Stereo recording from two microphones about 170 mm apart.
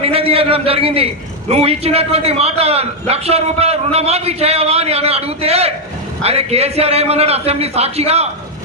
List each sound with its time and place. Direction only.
0.0 s a man's voice: 35° right (ahead or behind)